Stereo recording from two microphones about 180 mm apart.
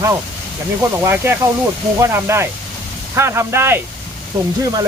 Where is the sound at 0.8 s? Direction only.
15° right (ahead or behind).